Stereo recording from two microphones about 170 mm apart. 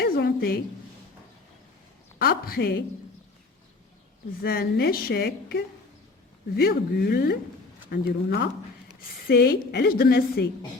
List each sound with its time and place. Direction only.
0.0 s a sound: 65° left (ahead or behind)
2.2 s speech: 60° left (ahead or behind)
4.4 s speech: 60° left (ahead or behind)
7.9 s speech: 75° left (ahead or behind)
9.0 s speech: 65° left (ahead or behind)